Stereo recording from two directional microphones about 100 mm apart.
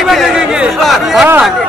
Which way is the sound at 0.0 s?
Centre (ahead or behind).